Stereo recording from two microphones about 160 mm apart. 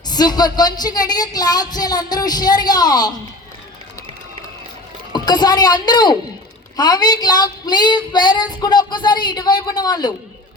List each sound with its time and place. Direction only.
0.1 s female singing: 25° left (ahead or behind)
5.1 s female singing: 25° left (ahead or behind)